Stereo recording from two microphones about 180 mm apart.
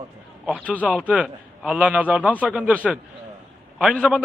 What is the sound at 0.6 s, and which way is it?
Speech, 10° left (ahead or behind).